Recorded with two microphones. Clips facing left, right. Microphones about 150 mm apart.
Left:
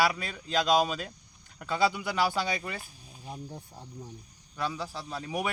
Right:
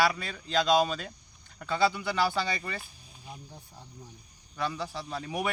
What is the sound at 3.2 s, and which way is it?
Speech, 40° left (ahead or behind).